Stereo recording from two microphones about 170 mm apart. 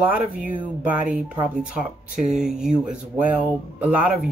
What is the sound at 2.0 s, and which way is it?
Speech, 45° right (ahead or behind).